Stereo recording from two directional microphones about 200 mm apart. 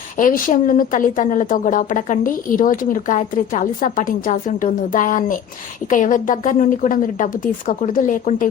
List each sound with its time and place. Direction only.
0.2 s a woman's voice: 40° left (ahead or behind)